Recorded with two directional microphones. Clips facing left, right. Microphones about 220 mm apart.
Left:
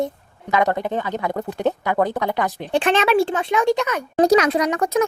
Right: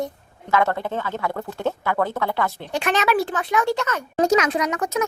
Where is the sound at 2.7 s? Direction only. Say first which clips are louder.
Left 4 dB; 30° left (ahead or behind).